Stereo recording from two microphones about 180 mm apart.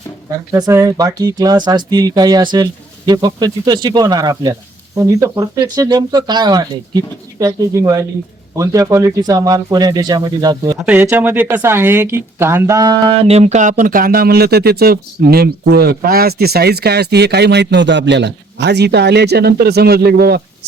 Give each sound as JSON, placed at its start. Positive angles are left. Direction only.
{"t": 0.5, "sound": "speech", "side_deg": -15}
{"t": 10.8, "sound": "speech", "side_deg": -10}